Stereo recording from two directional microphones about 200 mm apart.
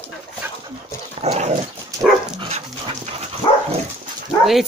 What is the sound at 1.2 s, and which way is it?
Dog, 35° right (ahead or behind).